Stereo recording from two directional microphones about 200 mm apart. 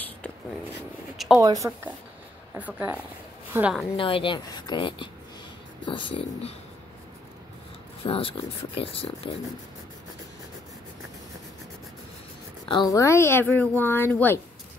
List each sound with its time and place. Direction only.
1.1 s a sound: centre (ahead or behind)
1.4 s speech: 20° right (ahead or behind)
2.5 s speech: 10° right (ahead or behind)
3.9 s speech: 25° left (ahead or behind)
8.0 s speech: 25° left (ahead or behind)
12.6 s speech: 20° left (ahead or behind)